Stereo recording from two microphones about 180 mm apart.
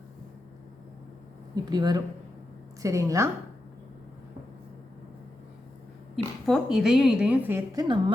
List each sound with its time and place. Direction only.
1.7 s a woman's voice: 20° right (ahead or behind)
6.4 s a woman's voice: centre (ahead or behind); by 8.1 s 25° right (ahead or behind)